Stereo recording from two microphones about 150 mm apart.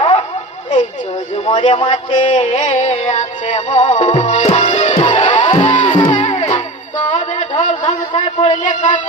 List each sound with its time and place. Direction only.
0.0 s a sound: 40° left (ahead or behind)
1.5 s speech: 40° left (ahead or behind)
2.1 s music: 50° left (ahead or behind)
5.7 s music: 55° left (ahead or behind)
8.6 s a man's voice: 55° left (ahead or behind)